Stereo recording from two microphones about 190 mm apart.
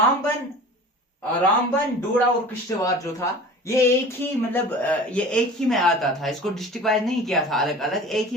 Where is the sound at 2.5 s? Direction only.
15° left (ahead or behind).